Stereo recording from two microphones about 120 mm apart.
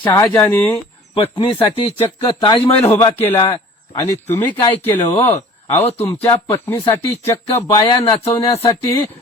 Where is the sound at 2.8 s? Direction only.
20° left (ahead or behind).